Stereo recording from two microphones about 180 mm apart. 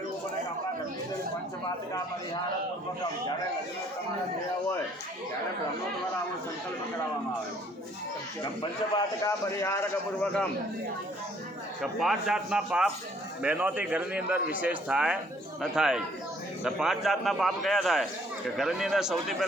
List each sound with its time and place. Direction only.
8.6 s a man's voice: 20° left (ahead or behind)
11.8 s a man's voice: centre (ahead or behind)